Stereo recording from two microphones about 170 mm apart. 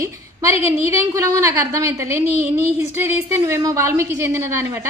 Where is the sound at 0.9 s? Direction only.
15° right (ahead or behind).